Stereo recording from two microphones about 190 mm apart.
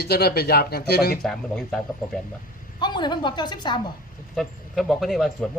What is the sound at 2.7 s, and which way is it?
A woman's voice, 25° left (ahead or behind).